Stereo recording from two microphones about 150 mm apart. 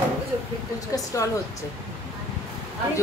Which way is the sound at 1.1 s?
20° left (ahead or behind).